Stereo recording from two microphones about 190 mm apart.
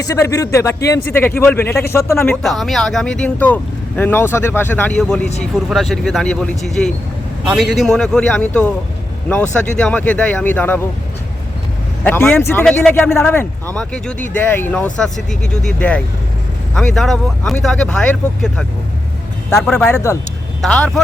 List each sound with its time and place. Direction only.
0.0 s speech: 15° left (ahead or behind)
9.7 s speech: 5° left (ahead or behind)
12.0 s speech: 10° left (ahead or behind)